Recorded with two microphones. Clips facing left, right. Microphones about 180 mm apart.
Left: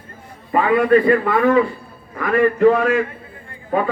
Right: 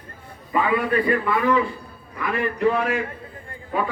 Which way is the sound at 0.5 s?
50° left (ahead or behind).